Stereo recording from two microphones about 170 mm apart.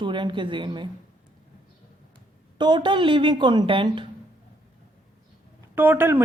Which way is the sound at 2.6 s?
25° right (ahead or behind).